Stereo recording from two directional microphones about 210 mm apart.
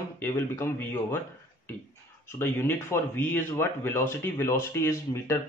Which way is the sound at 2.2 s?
10° left (ahead or behind).